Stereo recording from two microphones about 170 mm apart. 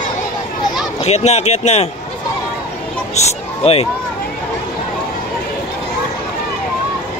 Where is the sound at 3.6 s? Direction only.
35° left (ahead or behind).